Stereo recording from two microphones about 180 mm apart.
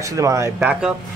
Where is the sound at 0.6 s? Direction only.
5° right (ahead or behind).